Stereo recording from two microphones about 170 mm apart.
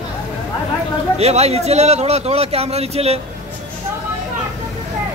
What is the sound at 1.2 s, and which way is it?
A man's voice, 40° right (ahead or behind).